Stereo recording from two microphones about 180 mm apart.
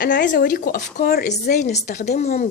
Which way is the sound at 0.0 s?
70° left (ahead or behind).